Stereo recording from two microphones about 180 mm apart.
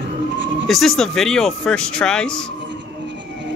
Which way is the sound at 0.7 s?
Centre (ahead or behind).